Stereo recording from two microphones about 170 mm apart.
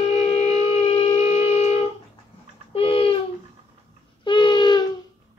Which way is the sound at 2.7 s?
35° left (ahead or behind).